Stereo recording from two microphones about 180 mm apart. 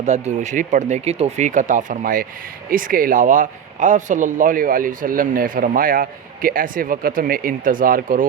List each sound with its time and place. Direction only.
0.0 s speech: 40° right (ahead or behind)